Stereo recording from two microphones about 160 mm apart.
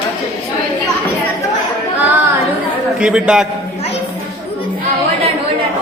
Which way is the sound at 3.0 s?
5° right (ahead or behind).